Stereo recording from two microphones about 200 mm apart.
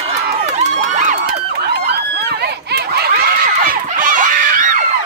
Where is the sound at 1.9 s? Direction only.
55° right (ahead or behind).